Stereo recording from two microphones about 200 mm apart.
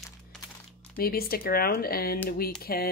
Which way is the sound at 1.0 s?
50° left (ahead or behind).